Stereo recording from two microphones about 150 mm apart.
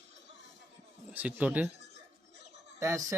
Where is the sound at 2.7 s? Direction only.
20° right (ahead or behind).